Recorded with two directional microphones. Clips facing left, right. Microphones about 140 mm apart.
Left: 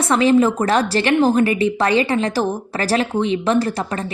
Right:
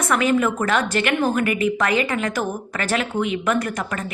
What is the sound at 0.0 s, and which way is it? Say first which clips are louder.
A woman's voice: left 5 dB; 30° left (ahead or behind).